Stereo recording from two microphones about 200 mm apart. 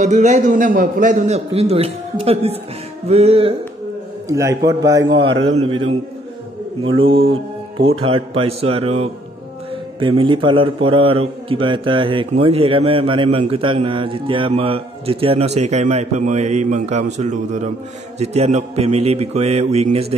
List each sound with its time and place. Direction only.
0.0 s a man's voice: 35° right (ahead or behind)
4.3 s a man's voice: 15° right (ahead or behind)
5.4 s a man's voice: 30° right (ahead or behind)
7.1 s a man's voice: 25° right (ahead or behind)